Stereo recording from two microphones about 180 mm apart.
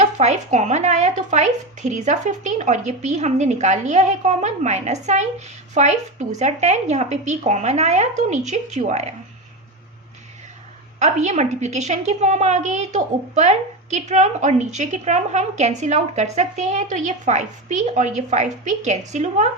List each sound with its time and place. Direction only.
0.0 s a woman's voice: 40° right (ahead or behind)
11.0 s a woman's voice: 40° right (ahead or behind)